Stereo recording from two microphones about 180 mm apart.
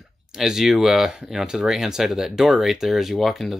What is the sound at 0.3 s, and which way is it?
Speech, 5° right (ahead or behind).